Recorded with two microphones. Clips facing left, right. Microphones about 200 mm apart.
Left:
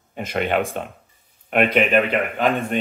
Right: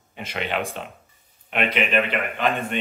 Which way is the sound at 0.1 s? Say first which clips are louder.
Left 6 dB; 45° left (ahead or behind).